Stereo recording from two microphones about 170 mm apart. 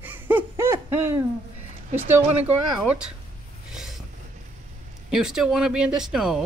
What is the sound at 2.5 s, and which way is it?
Speech, 5° right (ahead or behind).